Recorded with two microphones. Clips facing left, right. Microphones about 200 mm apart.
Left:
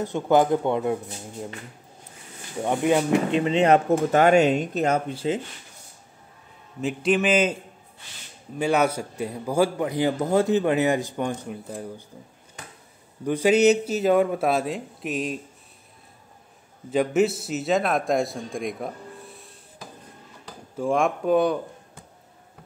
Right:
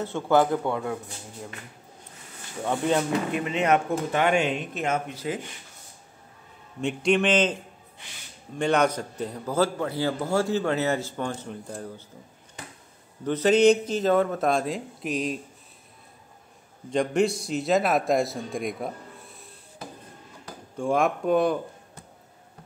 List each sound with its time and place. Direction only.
0.0 s speech: 15° left (ahead or behind)
2.6 s a man's voice: 15° left (ahead or behind)
3.3 s speech: 25° left (ahead or behind)
6.8 s a man's voice: centre (ahead or behind)
8.5 s a man's voice: 5° left (ahead or behind)
13.2 s a man's voice: 10° left (ahead or behind)
16.9 s a man's voice: 5° left (ahead or behind)
20.7 s a man's voice: centre (ahead or behind)